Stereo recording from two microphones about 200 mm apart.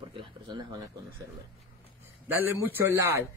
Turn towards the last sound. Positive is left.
turn(degrees=-10)  # may be behind; listen again after turning